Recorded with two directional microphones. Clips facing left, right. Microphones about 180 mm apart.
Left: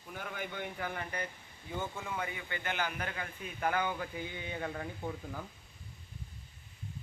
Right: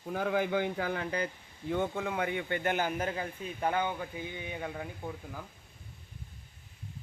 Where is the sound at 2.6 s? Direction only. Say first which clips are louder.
Right 4 dB; 40° right (ahead or behind).